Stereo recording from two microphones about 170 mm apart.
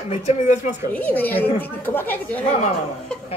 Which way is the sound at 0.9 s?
10° left (ahead or behind).